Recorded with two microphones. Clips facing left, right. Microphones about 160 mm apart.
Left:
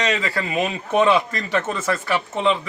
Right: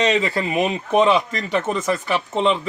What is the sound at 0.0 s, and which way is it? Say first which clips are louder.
Speech: right 4 dB; 25° right (ahead or behind).